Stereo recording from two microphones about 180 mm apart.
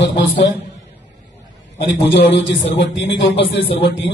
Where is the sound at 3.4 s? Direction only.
30° left (ahead or behind).